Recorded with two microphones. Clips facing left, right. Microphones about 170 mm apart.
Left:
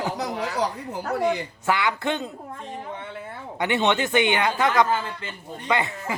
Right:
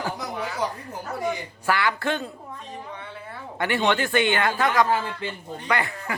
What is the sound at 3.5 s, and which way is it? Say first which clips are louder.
Speech: left 1 dB; 20° left (ahead or behind).